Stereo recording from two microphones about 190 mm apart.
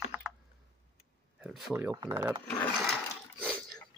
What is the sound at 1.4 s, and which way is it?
Speech, 5° right (ahead or behind).